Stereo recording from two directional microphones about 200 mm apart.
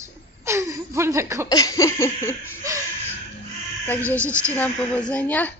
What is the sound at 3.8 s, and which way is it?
A woman's voice, 10° left (ahead or behind).